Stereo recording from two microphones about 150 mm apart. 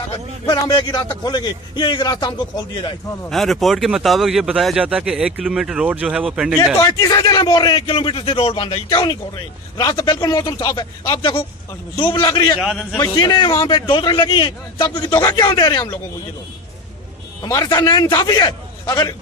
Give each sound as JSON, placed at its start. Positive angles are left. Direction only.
{"t": 0.5, "sound": "a man's voice", "side_deg": 30}
{"t": 3.3, "sound": "speech", "side_deg": 0}
{"t": 6.6, "sound": "a man's voice", "side_deg": 20}
{"t": 9.8, "sound": "a man's voice", "side_deg": 25}
{"t": 12.5, "sound": "speech", "side_deg": 0}
{"t": 13.1, "sound": "a man's voice", "side_deg": 30}
{"t": 17.4, "sound": "a man's voice", "side_deg": 20}